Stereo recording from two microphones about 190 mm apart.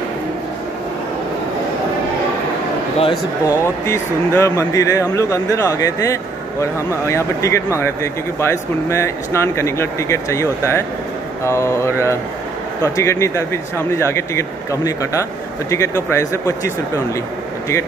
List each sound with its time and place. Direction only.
3.0 s speech: 20° left (ahead or behind)